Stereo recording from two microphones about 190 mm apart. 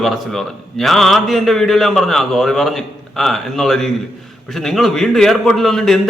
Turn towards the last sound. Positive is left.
turn(degrees=0)  # may be behind; listen again after turning